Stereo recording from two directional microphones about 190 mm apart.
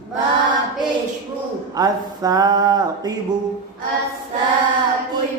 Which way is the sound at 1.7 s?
20° right (ahead or behind).